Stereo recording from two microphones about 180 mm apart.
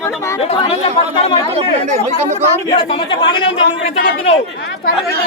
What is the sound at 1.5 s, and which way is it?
Speech, 40° right (ahead or behind).